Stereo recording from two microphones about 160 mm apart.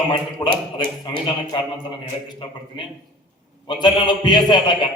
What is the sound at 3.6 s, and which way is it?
A man's voice, 30° left (ahead or behind).